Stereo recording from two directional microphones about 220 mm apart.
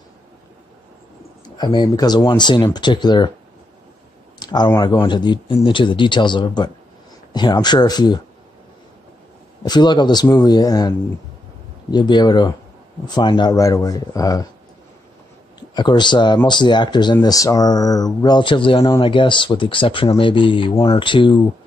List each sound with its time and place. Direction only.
1.4 s speech: 20° left (ahead or behind)
4.4 s speech: 20° left (ahead or behind)
9.6 s speech: 20° left (ahead or behind)
15.7 s speech: 20° left (ahead or behind)